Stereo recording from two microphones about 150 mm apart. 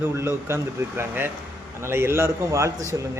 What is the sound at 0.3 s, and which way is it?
Speech, 15° right (ahead or behind).